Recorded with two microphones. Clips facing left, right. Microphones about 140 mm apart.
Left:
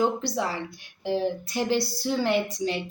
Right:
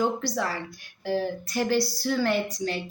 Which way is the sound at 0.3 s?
20° left (ahead or behind).